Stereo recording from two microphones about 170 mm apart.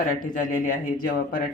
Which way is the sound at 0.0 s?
50° left (ahead or behind).